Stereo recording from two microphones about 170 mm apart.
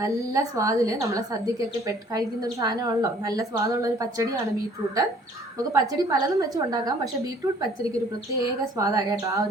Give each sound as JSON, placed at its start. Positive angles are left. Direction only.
{"t": 0.0, "sound": "a woman's voice", "side_deg": -20}
{"t": 5.7, "sound": "a woman's voice", "side_deg": -20}